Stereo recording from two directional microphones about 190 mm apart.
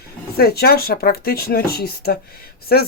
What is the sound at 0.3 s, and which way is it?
Speech, 55° left (ahead or behind).